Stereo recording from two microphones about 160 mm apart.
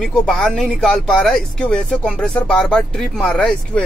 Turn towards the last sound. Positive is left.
turn(degrees=5)  # may be behind; listen again after turning